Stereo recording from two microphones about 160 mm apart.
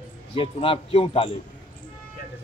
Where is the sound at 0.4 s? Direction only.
35° left (ahead or behind).